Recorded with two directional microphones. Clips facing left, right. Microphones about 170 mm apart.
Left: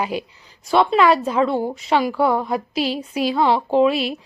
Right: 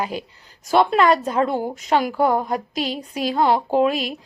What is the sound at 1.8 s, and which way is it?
A woman's voice, 40° right (ahead or behind).